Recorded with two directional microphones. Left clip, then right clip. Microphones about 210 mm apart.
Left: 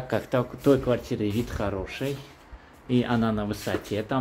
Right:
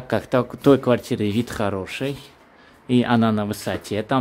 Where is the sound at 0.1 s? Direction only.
30° right (ahead or behind).